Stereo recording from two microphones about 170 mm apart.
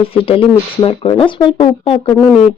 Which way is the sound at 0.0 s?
35° left (ahead or behind).